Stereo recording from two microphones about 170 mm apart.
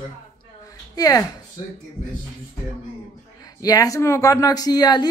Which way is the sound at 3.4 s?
20° left (ahead or behind).